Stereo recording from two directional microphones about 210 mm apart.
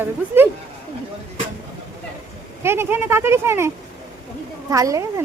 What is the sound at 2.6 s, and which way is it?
A woman's voice, 10° right (ahead or behind).